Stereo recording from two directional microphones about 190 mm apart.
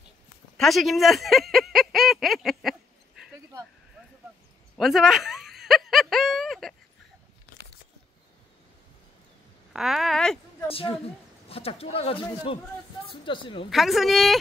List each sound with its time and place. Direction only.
0.6 s speech: centre (ahead or behind)
4.7 s a sound: centre (ahead or behind)
9.7 s speech: centre (ahead or behind)
10.7 s speech: 30° left (ahead or behind)
13.7 s speech: centre (ahead or behind)